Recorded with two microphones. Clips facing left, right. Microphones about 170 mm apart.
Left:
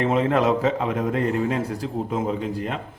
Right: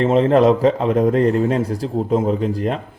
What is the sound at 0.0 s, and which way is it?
A man's voice, 30° right (ahead or behind).